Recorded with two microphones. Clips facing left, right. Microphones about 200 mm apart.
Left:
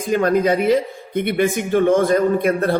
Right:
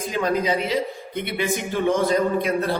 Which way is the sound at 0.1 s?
55° left (ahead or behind).